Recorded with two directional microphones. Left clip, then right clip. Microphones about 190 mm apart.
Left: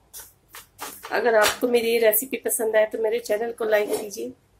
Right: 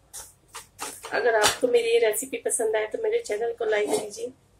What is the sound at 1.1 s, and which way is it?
Speech, 50° left (ahead or behind).